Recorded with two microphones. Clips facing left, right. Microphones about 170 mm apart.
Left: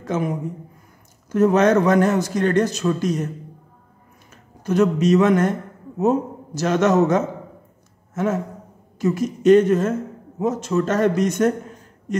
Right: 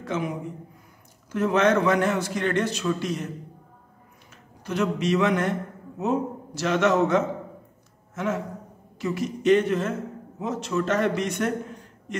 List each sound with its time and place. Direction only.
0.0 s a man's voice: 45° left (ahead or behind)
1.3 s a man's voice: 40° left (ahead or behind)
4.6 s a man's voice: 45° left (ahead or behind)